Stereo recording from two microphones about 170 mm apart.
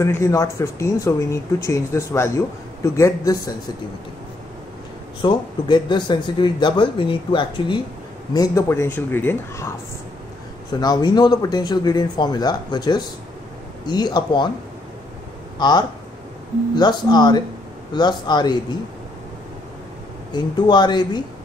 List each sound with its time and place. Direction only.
0.0 s speech: 15° left (ahead or behind)
5.2 s speech: 25° left (ahead or behind)
10.8 s speech: 25° left (ahead or behind)
15.6 s speech: 25° left (ahead or behind)
20.3 s speech: 25° left (ahead or behind)